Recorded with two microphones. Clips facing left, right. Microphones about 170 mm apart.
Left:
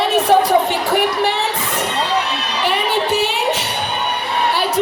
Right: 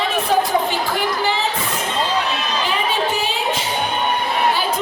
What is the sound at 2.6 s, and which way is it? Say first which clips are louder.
Singing: left 5 dB; 70° left (ahead or behind).